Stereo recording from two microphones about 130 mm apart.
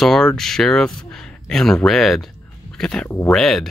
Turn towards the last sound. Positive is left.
turn(degrees=0)  # may be behind; listen again after turning